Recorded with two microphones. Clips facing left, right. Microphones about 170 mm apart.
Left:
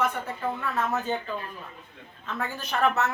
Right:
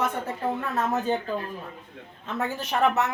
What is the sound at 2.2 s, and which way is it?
Speech, 20° right (ahead or behind).